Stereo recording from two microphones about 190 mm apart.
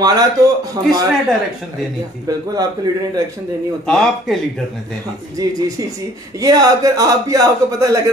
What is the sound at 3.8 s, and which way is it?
Speech, 5° left (ahead or behind).